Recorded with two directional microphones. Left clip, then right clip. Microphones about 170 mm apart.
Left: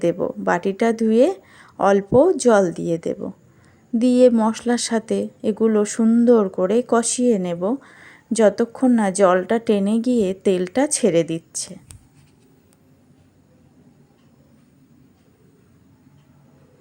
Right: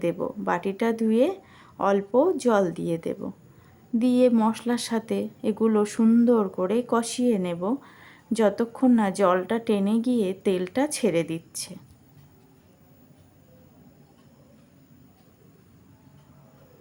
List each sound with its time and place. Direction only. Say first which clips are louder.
0.0 s speech: left 7 dB; 25° left (ahead or behind)
6.2 s speech: left 7 dB; 25° left (ahead or behind)